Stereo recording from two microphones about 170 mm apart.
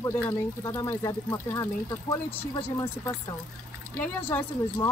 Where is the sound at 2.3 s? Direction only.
35° left (ahead or behind).